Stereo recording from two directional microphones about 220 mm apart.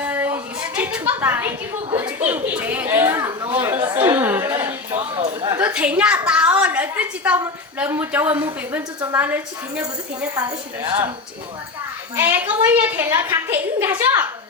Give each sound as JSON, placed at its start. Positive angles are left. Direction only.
{"t": 0.0, "sound": "a woman's voice", "side_deg": -10}
{"t": 5.1, "sound": "speech", "side_deg": -25}
{"t": 5.5, "sound": "a woman's voice", "side_deg": -5}
{"t": 10.8, "sound": "speech", "side_deg": -25}
{"t": 12.1, "sound": "a woman's voice", "side_deg": -10}